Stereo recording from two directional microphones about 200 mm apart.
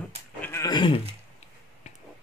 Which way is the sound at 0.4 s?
15° left (ahead or behind).